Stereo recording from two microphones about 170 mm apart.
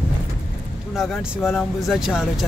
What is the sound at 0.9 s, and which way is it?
Speech, centre (ahead or behind).